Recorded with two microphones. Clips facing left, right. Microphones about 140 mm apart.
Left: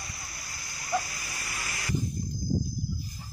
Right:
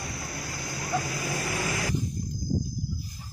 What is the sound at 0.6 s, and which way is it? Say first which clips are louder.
Dog: even; 65° right (ahead or behind).